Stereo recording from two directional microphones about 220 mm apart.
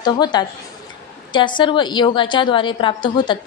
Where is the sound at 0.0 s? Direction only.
20° left (ahead or behind).